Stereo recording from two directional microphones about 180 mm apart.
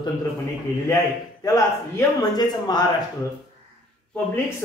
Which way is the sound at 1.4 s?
20° left (ahead or behind).